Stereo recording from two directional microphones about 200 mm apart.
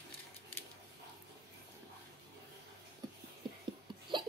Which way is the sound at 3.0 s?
20° right (ahead or behind).